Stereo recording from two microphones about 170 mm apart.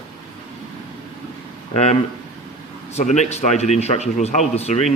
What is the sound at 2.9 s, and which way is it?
Speech, 40° left (ahead or behind).